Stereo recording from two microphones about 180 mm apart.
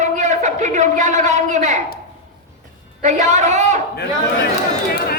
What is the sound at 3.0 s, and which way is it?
Speech, 40° right (ahead or behind).